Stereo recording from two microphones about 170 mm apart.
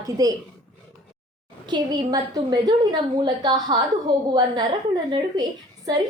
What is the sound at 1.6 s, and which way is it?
A woman's voice, 25° right (ahead or behind).